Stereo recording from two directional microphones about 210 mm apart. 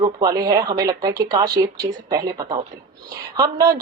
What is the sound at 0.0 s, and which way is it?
A woman's voice, 20° right (ahead or behind).